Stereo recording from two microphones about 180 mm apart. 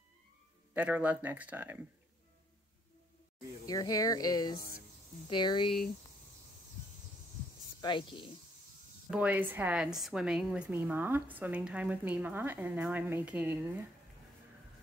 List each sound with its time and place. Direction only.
0.7 s a woman's voice: 10° right (ahead or behind)
3.6 s speech: 20° left (ahead or behind)
7.8 s speech: 25° left (ahead or behind)
9.1 s a woman's voice: 5° right (ahead or behind)